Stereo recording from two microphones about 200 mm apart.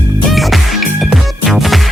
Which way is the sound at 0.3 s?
Centre (ahead or behind).